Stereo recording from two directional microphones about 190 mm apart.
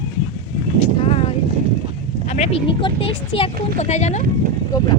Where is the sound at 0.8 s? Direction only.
30° left (ahead or behind).